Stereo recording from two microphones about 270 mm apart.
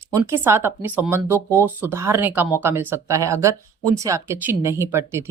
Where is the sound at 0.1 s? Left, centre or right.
Centre.